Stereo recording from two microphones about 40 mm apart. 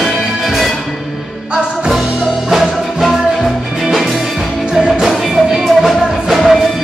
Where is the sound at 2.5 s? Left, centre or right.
Centre.